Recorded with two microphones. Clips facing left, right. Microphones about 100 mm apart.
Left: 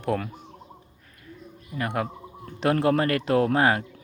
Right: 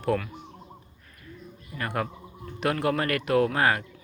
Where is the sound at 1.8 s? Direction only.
15° left (ahead or behind).